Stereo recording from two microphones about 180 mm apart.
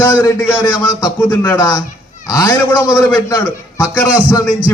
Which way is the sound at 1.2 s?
10° left (ahead or behind).